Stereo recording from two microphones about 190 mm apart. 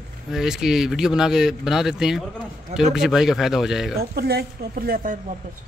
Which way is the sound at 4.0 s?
55° right (ahead or behind).